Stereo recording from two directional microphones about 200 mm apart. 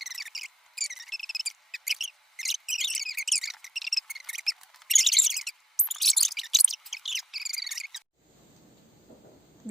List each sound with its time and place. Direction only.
0.0 s cricket: centre (ahead or behind)